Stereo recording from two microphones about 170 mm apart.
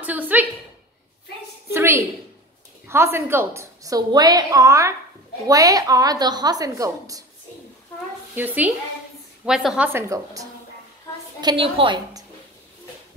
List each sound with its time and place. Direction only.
0.0 s a sound: 10° right (ahead or behind)
1.7 s a woman's voice: 15° right (ahead or behind)
8.4 s a woman's voice: 10° right (ahead or behind)
9.9 s a woman's voice: 20° right (ahead or behind)
11.4 s a woman's voice: 30° right (ahead or behind)